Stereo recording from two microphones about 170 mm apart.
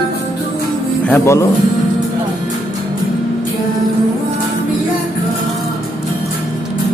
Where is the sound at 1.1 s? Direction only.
15° left (ahead or behind).